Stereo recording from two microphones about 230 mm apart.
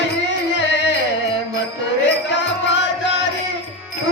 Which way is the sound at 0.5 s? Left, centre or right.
Left.